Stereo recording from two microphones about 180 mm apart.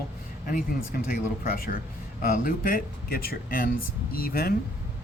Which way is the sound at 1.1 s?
55° left (ahead or behind).